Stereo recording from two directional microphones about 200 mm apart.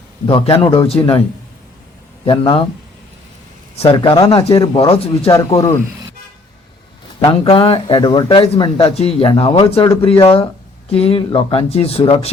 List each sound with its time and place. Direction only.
0.3 s speech: 25° left (ahead or behind)
2.2 s speech: 25° left (ahead or behind)
3.8 s speech: 25° left (ahead or behind)
7.2 s speech: 25° left (ahead or behind)